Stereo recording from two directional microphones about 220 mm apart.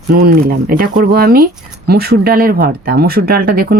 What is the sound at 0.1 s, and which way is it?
Speech, 45° right (ahead or behind).